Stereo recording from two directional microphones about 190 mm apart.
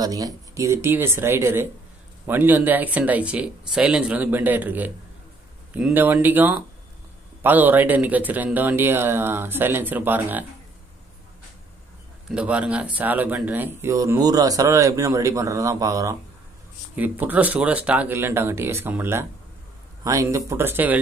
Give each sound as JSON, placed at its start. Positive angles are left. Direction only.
{"t": 0.0, "sound": "speech", "side_deg": -20}
{"t": 12.4, "sound": "speech", "side_deg": -5}